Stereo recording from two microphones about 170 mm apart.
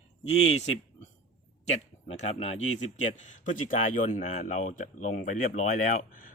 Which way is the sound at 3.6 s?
50° left (ahead or behind).